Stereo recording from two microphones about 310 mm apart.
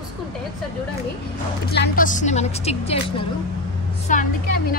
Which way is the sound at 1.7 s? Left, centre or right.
Left.